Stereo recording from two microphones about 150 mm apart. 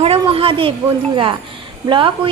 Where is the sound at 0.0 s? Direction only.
40° right (ahead or behind).